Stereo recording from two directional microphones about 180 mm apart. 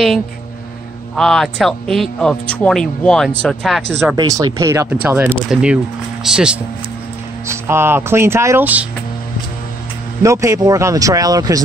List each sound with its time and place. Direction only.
1.1 s speech: centre (ahead or behind)
4.2 s speech: 20° right (ahead or behind)
10.2 s speech: 15° right (ahead or behind)